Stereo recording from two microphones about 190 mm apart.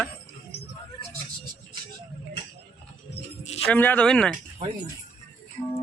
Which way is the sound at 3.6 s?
10° left (ahead or behind).